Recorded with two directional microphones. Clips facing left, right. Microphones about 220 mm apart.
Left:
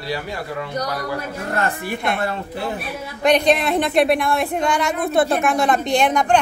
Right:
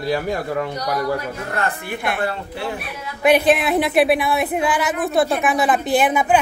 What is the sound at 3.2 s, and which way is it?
Speech, 5° right (ahead or behind).